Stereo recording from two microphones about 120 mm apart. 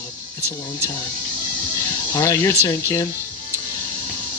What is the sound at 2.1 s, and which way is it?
Speech, 25° left (ahead or behind).